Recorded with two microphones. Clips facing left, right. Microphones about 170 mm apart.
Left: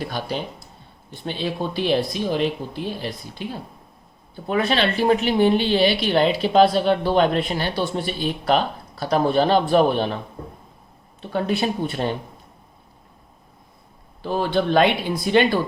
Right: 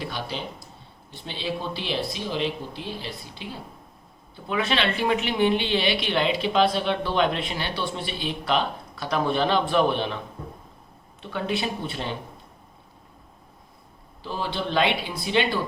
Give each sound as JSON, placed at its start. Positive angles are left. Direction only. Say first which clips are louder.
{"t": 0.0, "sound": "speech", "louder": "left 5 dB", "side_deg": 45}
{"t": 4.4, "sound": "a woman's voice", "louder": "left 4 dB", "side_deg": 40}
{"t": 11.3, "sound": "speech", "louder": "left 5 dB", "side_deg": 40}
{"t": 14.2, "sound": "speech", "louder": "left 8 dB", "side_deg": 50}